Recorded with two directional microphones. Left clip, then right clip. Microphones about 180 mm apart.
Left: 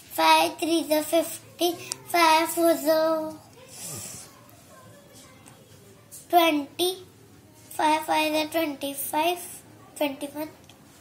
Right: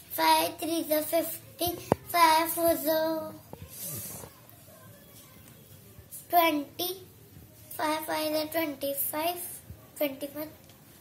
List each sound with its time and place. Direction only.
0.1 s child singing: 20° right (ahead or behind)
3.7 s snake: 25° right (ahead or behind)
6.3 s child singing: 20° right (ahead or behind)